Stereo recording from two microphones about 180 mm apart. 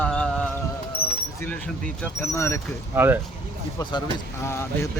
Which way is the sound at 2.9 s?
10° right (ahead or behind).